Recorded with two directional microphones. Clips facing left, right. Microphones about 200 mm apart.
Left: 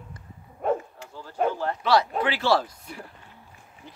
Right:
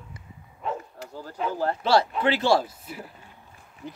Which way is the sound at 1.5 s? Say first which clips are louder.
Right 4 dB; 35° right (ahead or behind).